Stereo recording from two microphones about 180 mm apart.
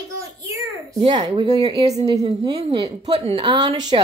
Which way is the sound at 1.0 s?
30° right (ahead or behind).